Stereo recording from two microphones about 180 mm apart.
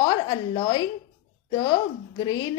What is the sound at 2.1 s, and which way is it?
Speech, 25° left (ahead or behind).